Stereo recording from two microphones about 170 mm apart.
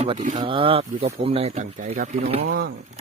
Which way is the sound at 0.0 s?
45° right (ahead or behind).